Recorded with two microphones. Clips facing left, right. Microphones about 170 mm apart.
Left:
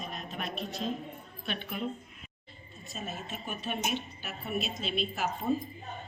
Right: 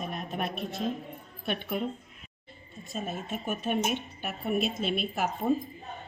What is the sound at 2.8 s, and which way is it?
A woman's voice, 50° right (ahead or behind).